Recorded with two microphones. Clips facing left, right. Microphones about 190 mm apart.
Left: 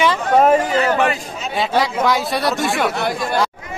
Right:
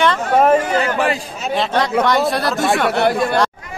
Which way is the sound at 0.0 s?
Centre (ahead or behind).